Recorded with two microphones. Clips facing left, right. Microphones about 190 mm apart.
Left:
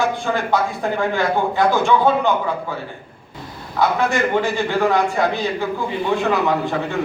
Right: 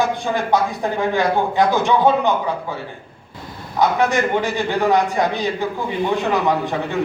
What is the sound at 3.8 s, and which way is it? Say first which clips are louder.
A man's voice: right 1 dB; 20° right (ahead or behind).